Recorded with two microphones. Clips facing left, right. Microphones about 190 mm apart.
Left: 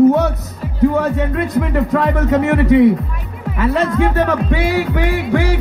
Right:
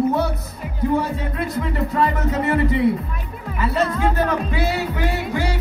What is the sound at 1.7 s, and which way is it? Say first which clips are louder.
Music: left 3 dB; 85° left.